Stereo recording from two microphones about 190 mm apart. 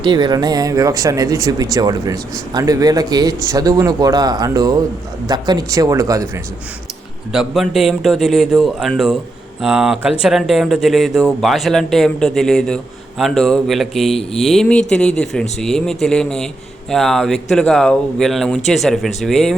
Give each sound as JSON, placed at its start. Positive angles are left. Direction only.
{"t": 0.0, "sound": "speech", "side_deg": -25}
{"t": 7.3, "sound": "speech", "side_deg": 0}